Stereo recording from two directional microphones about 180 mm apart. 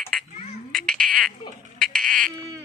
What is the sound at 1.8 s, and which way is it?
Insect, 5° left (ahead or behind).